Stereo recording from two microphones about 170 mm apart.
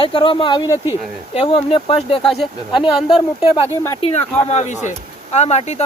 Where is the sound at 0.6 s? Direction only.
15° right (ahead or behind).